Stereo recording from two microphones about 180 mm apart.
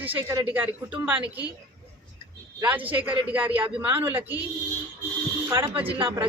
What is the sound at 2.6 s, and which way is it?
Speech, 10° right (ahead or behind).